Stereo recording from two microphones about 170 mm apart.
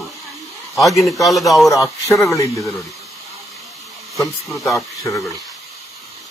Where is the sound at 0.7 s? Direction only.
Centre (ahead or behind).